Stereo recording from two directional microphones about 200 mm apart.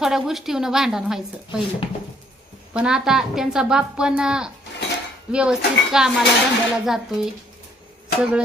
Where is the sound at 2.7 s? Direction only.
5° right (ahead or behind).